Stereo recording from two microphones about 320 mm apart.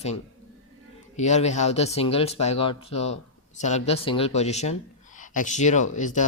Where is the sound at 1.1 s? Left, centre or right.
Left.